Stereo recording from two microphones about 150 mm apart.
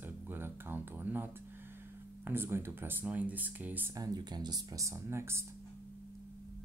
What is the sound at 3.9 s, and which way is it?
Speech, 25° right (ahead or behind).